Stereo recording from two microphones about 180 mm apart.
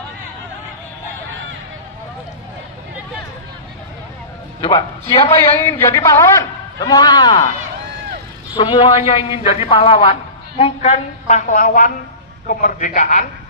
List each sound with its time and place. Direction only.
4.6 s a man's voice: 30° left (ahead or behind)
5.6 s a man's voice: 15° left (ahead or behind)
8.5 s a man's voice: 30° left (ahead or behind); by 13.3 s 45° left (ahead or behind)